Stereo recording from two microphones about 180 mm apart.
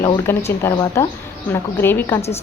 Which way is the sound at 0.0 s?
15° left (ahead or behind).